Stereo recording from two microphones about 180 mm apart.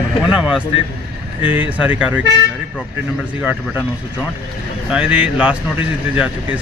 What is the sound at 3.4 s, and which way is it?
Speech, 5° right (ahead or behind).